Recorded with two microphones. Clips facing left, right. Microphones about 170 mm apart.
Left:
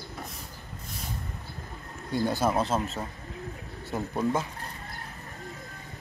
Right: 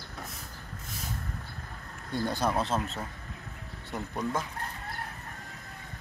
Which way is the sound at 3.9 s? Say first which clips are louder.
Left 5 dB; 25° left (ahead or behind).